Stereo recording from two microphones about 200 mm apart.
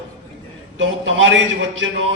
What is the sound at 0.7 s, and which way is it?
Speech, 70° right (ahead or behind).